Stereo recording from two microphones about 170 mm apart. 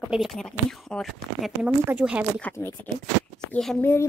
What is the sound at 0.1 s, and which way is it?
Speech, centre (ahead or behind).